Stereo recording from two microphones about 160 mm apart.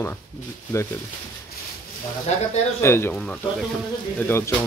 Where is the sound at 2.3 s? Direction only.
45° left (ahead or behind).